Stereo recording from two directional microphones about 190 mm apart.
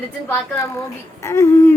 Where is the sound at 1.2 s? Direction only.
15° left (ahead or behind).